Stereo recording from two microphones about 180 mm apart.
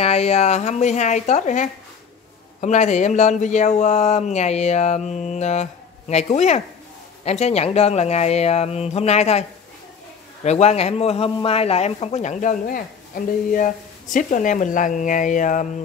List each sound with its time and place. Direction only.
0.0 s a man's voice: 35° left (ahead or behind)